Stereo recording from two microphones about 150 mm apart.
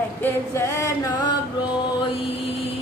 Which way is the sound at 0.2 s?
15° left (ahead or behind).